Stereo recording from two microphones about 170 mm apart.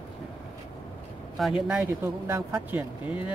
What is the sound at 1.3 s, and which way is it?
Speech, 5° right (ahead or behind).